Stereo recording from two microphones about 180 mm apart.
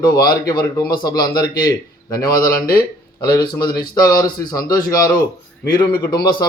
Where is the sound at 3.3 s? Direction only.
20° left (ahead or behind).